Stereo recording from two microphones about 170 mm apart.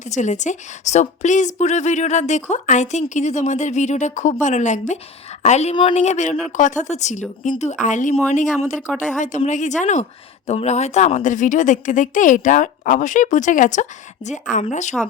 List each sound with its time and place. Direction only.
0.1 s a woman's voice: 45° left (ahead or behind)